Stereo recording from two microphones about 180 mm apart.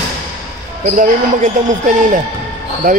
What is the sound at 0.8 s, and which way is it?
A man's voice, 45° right (ahead or behind).